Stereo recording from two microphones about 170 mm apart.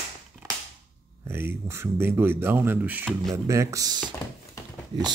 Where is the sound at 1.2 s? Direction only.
15° right (ahead or behind).